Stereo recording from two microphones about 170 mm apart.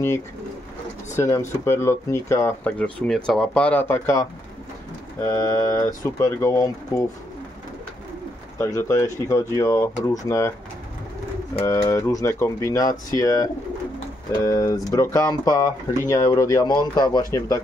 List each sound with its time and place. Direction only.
1.1 s speech: 15° left (ahead or behind)
8.5 s speech: 15° left (ahead or behind)
11.6 s speech: 15° left (ahead or behind)